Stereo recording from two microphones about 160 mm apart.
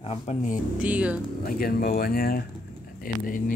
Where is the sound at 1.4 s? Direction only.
65° left (ahead or behind).